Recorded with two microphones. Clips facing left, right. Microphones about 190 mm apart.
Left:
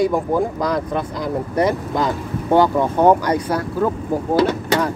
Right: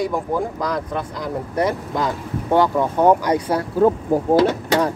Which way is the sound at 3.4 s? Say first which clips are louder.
Right 3 dB; 25° right (ahead or behind).